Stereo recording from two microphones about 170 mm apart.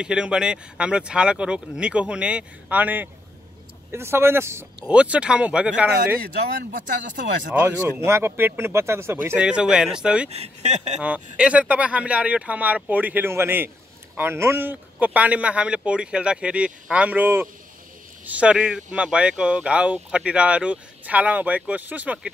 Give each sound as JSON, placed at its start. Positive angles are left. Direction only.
{"t": 0.0, "sound": "speech", "side_deg": -5}
{"t": 7.5, "sound": "speech", "side_deg": -10}
{"t": 10.3, "sound": "speech", "side_deg": -40}
{"t": 11.0, "sound": "speech", "side_deg": -5}